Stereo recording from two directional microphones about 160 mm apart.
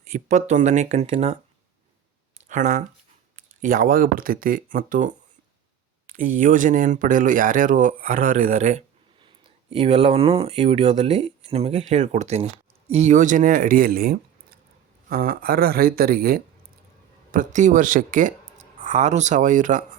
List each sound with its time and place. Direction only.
0.1 s speech: 45° right (ahead or behind)
2.5 s speech: 55° right (ahead or behind); by 16.4 s 70° right (ahead or behind)
17.3 s speech: 50° right (ahead or behind)